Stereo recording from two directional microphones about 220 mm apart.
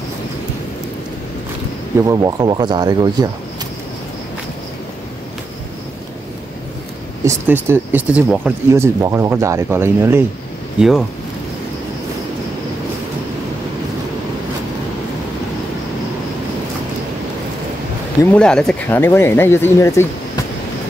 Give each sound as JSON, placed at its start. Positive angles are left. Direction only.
{"t": 2.0, "sound": "speech", "side_deg": -15}
{"t": 7.2, "sound": "speech", "side_deg": -10}
{"t": 18.2, "sound": "speech", "side_deg": 5}